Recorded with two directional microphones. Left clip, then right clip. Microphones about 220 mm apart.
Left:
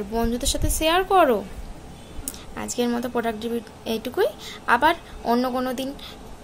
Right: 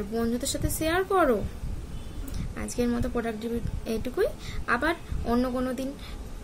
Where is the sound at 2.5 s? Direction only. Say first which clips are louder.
Left 4 dB; 5° right (ahead or behind).